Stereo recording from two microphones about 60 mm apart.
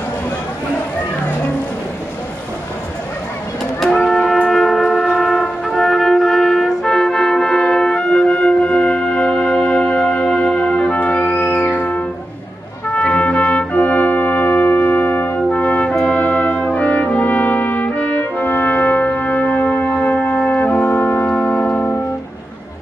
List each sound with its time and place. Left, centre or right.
4.1 s music: centre
5.8 s trumpet: centre; by 15.3 s left
15.3 s music: left
16.0 s brass instrument: centre; by 21.3 s left
21.3 s music: centre